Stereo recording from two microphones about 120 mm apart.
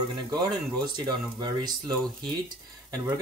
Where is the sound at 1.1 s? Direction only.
35° right (ahead or behind).